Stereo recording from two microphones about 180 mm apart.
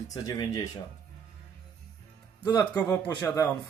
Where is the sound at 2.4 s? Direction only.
10° left (ahead or behind).